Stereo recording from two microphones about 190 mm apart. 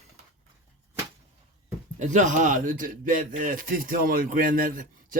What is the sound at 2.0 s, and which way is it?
A man's voice, 40° right (ahead or behind).